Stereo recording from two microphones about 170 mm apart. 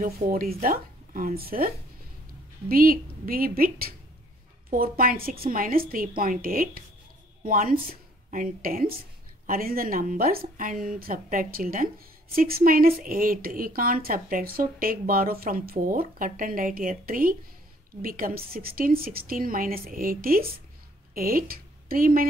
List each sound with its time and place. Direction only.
0.0 s a woman's voice: 60° right (ahead or behind)
2.7 s a woman's voice: 60° right (ahead or behind)